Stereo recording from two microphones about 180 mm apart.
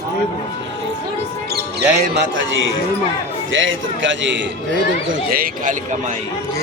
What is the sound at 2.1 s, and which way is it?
A man's voice, 90° right.